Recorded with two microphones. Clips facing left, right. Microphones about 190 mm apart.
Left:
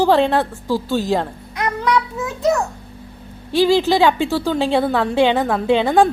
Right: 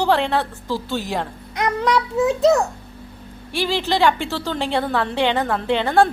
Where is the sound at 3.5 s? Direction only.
15° left (ahead or behind).